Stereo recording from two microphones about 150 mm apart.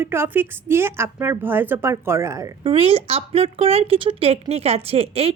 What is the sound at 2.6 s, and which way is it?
A woman's voice, 35° right (ahead or behind).